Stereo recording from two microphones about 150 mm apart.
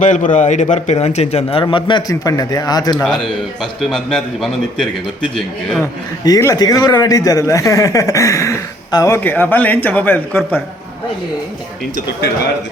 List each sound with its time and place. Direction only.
0.0 s a man's voice: 55° left (ahead or behind); by 1.6 s 40° left (ahead or behind)
1.6 s a man's voice: 30° left (ahead or behind)
3.6 s a man's voice: centre (ahead or behind)
5.8 s a man's voice: 20° left (ahead or behind)